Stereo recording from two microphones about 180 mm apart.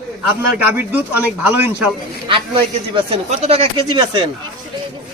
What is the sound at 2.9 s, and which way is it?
Speech, 30° right (ahead or behind).